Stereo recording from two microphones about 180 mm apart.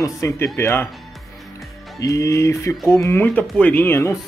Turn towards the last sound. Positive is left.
turn(degrees=15)  # may be behind; listen again after turning